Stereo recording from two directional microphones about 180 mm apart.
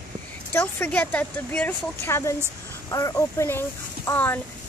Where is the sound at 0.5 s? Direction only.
10° left (ahead or behind).